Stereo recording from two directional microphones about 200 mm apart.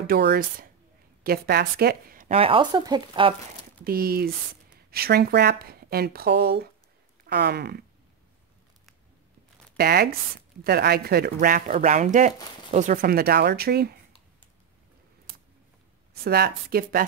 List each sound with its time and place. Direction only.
0.0 s a woman's voice: 50° right (ahead or behind)
2.3 s speech: 25° right (ahead or behind)
3.8 s speech: 50° right (ahead or behind)
7.2 s a sound: 55° right (ahead or behind)
9.8 s speech: 50° right (ahead or behind)
16.1 s speech: 50° right (ahead or behind)